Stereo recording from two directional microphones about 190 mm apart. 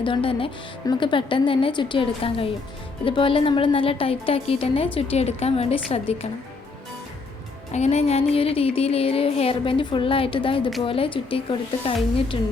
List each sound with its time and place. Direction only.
0.0 s a woman's voice: 30° left (ahead or behind)
4.9 s music: 35° left (ahead or behind)
7.7 s music: 35° left (ahead or behind)
10.8 s a woman's voice: 30° left (ahead or behind)